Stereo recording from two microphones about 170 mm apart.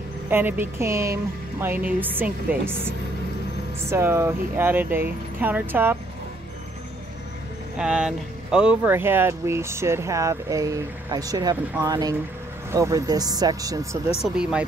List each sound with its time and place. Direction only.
0.3 s speech: 10° right (ahead or behind)
3.9 s speech: 15° right (ahead or behind)
7.7 s speech: 5° right (ahead or behind); by 14.1 s 20° right (ahead or behind)
14.2 s speech: 5° right (ahead or behind)